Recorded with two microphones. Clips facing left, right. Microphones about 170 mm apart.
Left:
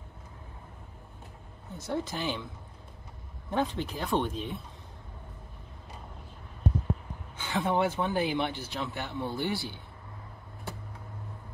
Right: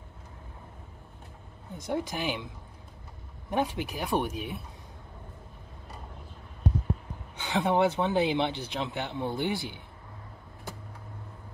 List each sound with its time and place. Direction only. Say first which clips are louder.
1.8 s speech: right 1 dB; 15° right (ahead or behind)
3.4 s speech: right 1 dB; 15° right (ahead or behind)
7.3 s speech: right 3 dB; 20° right (ahead or behind)